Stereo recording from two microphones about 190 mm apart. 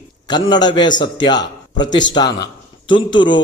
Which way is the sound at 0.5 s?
25° left (ahead or behind).